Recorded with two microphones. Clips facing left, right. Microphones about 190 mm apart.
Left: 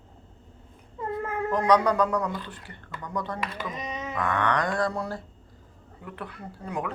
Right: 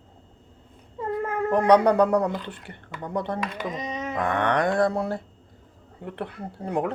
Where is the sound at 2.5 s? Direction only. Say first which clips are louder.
Right 2 dB; 60° right (ahead or behind).